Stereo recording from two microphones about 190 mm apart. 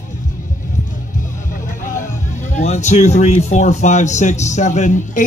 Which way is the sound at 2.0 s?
40° left (ahead or behind).